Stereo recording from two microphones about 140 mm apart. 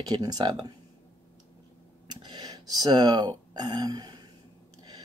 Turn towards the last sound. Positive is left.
turn(degrees=-30)  # may be behind; listen again after turning